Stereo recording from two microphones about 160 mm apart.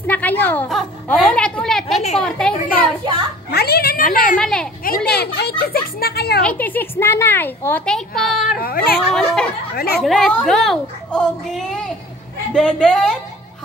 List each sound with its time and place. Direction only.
0.0 s a woman's voice: 10° left (ahead or behind)
2.5 s a child's voice: 55° left (ahead or behind)
3.5 s speech: 90° left; by 4.4 s 60° left (ahead or behind)
4.4 s a child's voice: 5° left (ahead or behind)
4.8 s a child's voice: 90° left
6.4 s a child's voice: 10° left (ahead or behind)
8.5 s speech: 70° left (ahead or behind)
9.1 s a child's voice: 5° left (ahead or behind)
9.8 s a woman's voice: 80° left
10.0 s a child's voice: centre (ahead or behind)